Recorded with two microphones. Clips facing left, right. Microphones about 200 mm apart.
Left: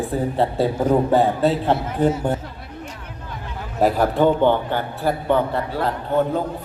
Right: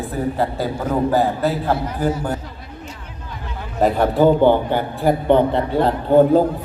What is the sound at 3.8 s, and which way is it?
A man's voice, centre (ahead or behind).